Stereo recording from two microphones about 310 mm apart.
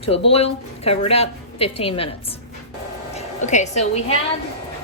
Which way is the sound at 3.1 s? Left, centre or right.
Left.